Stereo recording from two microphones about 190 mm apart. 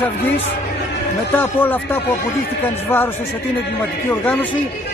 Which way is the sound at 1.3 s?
10° left (ahead or behind).